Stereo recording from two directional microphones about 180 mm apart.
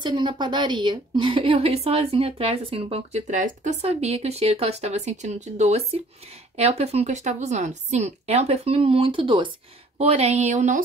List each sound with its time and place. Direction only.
0.0 s a woman's voice: 25° right (ahead or behind); by 10.8 s 40° right (ahead or behind)